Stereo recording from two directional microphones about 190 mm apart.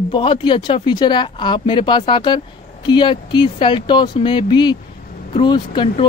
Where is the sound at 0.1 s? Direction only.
25° left (ahead or behind).